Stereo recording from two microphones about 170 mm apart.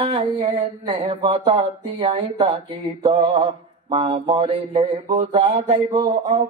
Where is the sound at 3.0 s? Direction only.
30° right (ahead or behind).